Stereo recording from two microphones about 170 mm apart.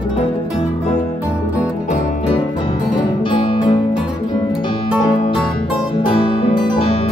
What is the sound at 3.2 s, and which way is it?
Music, 30° left (ahead or behind).